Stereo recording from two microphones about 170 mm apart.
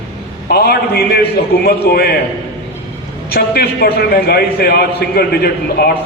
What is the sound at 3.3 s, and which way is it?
A man's voice, 65° left (ahead or behind).